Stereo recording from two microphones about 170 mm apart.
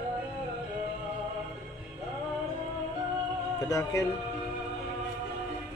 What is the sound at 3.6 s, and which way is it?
Speech, 20° left (ahead or behind).